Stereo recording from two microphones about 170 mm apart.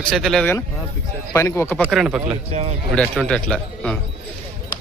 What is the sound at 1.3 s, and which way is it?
Speech, 15° left (ahead or behind).